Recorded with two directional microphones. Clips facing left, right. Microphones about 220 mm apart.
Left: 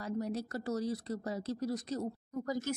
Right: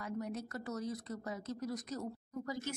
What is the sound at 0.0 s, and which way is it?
Speech, 35° left (ahead or behind).